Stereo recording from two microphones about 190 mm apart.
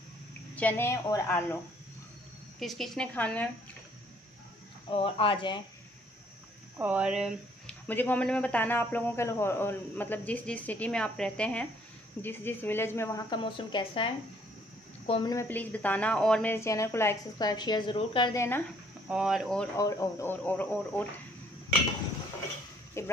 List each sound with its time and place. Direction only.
0.6 s speech: 10° left (ahead or behind)
2.6 s speech: centre (ahead or behind)
4.9 s speech: 30° left (ahead or behind)
6.8 s speech: 5° right (ahead or behind)
7.9 s speech: 10° left (ahead or behind); by 15.3 s 25° left (ahead or behind)
15.3 s speech: 10° left (ahead or behind)
16.5 s speech: 15° left (ahead or behind)
18.3 s speech: 15° left (ahead or behind)
19.0 s speech: 5° right (ahead or behind)
19.8 s speech: 15° left (ahead or behind)
23.0 s a sound: 15° left (ahead or behind)